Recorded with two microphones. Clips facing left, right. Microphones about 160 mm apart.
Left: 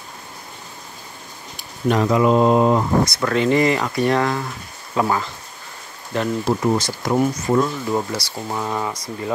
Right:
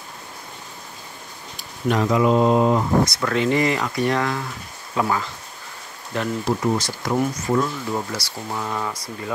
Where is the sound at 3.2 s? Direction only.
40° left (ahead or behind).